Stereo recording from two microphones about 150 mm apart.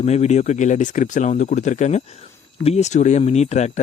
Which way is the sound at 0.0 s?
45° left (ahead or behind).